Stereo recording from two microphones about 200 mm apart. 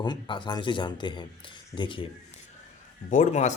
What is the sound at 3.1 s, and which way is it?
Speech, 35° left (ahead or behind).